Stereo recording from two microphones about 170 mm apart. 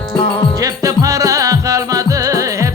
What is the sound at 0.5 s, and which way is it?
Music, 20° right (ahead or behind).